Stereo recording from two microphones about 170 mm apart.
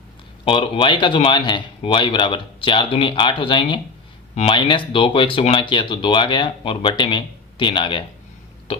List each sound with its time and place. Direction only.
0.4 s speech: 30° left (ahead or behind)